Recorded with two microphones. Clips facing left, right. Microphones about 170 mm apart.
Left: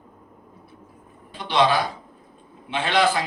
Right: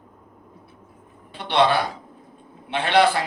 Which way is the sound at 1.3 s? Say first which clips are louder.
Right 1 dB; 65° right (ahead or behind).